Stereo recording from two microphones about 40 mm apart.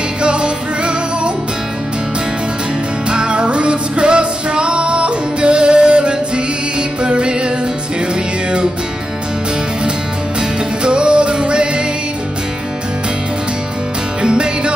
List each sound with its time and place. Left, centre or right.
0.2 s music: right
3.1 s music: right
10.8 s music: right
14.2 s music: right